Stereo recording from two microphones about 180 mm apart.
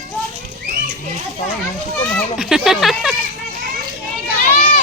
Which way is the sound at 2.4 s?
Centre (ahead or behind).